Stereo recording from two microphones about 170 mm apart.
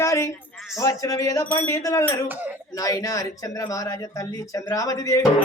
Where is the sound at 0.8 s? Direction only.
20° left (ahead or behind).